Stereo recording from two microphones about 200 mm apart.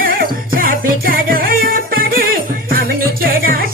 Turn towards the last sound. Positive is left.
turn(degrees=-45)  # may be behind; listen again after turning